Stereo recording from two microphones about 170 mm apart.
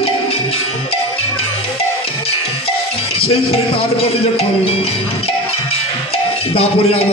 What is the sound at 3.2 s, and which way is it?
Speech, 35° left (ahead or behind).